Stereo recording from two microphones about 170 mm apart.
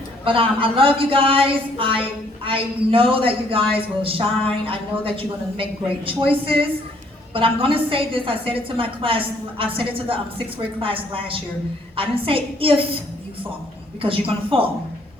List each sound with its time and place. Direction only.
0.3 s a woman's voice: 30° right (ahead or behind)
14.0 s a woman's voice: 35° right (ahead or behind)